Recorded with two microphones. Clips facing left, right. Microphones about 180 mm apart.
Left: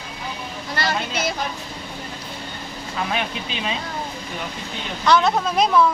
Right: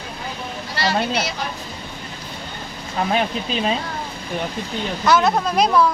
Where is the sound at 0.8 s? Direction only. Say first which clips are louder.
Right 4 dB; 50° left (ahead or behind).